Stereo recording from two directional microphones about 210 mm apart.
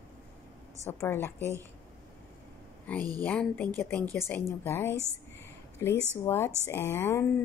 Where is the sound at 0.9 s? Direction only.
10° left (ahead or behind).